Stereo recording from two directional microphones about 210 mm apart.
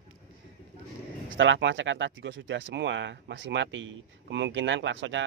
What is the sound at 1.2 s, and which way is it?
Speech, 65° right (ahead or behind).